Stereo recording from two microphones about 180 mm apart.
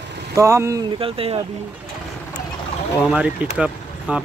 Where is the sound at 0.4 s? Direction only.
15° right (ahead or behind).